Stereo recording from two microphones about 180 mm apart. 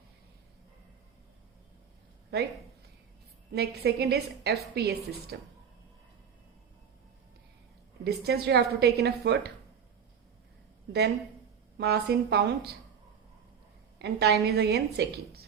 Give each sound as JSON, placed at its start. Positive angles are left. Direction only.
{"t": 3.5, "sound": "a woman's voice", "side_deg": -65}
{"t": 8.0, "sound": "a woman's voice", "side_deg": -65}
{"t": 11.8, "sound": "speech", "side_deg": -65}
{"t": 14.0, "sound": "a woman's voice", "side_deg": -65}